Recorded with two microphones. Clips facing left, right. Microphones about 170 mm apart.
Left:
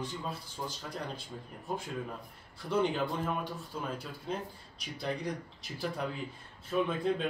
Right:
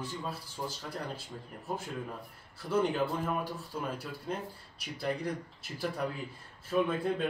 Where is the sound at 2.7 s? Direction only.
5° right (ahead or behind).